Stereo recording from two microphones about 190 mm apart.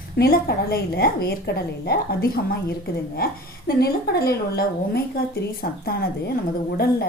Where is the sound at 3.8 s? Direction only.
55° left (ahead or behind).